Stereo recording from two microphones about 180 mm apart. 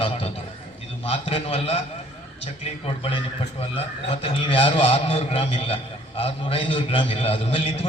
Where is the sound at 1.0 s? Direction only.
35° left (ahead or behind).